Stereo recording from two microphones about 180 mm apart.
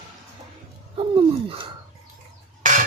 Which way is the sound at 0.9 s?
30° right (ahead or behind).